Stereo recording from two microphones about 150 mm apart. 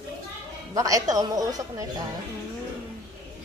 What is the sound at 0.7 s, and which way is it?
A woman's voice, 25° right (ahead or behind).